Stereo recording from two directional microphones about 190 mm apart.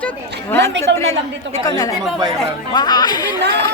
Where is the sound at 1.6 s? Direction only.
20° left (ahead or behind).